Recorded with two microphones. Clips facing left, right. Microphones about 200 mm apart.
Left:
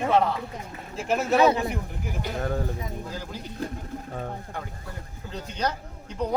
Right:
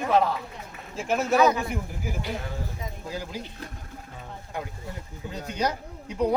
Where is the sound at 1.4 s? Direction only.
30° left (ahead or behind).